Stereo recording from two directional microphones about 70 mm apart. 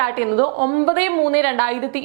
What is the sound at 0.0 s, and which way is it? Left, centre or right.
A woman's voice, centre.